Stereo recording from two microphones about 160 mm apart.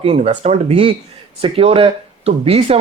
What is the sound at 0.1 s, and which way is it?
Speech, 45° right (ahead or behind).